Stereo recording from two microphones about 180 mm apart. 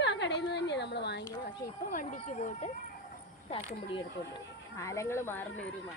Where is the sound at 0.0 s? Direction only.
75° left (ahead or behind).